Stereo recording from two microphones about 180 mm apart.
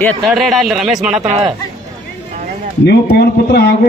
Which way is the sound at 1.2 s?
35° right (ahead or behind).